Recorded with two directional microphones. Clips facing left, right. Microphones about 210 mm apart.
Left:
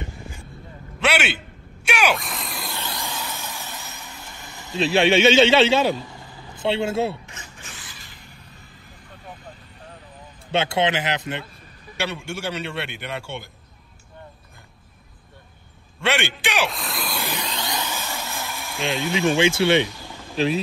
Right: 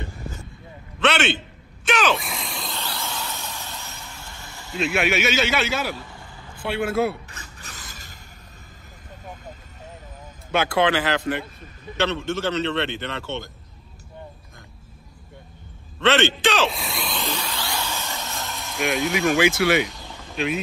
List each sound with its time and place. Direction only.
1.0 s a sound: 10° left (ahead or behind)
1.9 s groan: 10° left (ahead or behind)
2.1 s vehicle: centre (ahead or behind)
2.7 s vehicle: 15° left (ahead or behind)
4.7 s a man's voice: 30° left (ahead or behind)
7.2 s a sound: 35° right (ahead or behind)
10.5 s speech: 25° left (ahead or behind)
12.0 s a man's voice: 10° left (ahead or behind)
16.1 s a man's voice: 15° left (ahead or behind)
16.7 s speech: centre (ahead or behind)
17.2 s vehicle: 15° left (ahead or behind)
19.1 s speech: 25° left (ahead or behind)